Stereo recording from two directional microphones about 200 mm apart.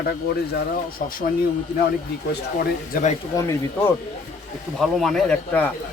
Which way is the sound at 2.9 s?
35° left (ahead or behind).